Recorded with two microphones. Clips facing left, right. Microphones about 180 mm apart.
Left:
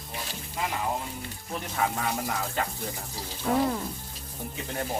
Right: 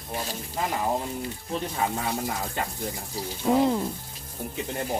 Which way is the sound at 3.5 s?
20° right (ahead or behind).